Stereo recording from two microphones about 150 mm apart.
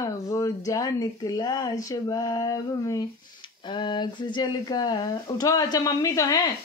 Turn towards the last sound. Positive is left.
turn(degrees=25)  # may be behind; listen again after turning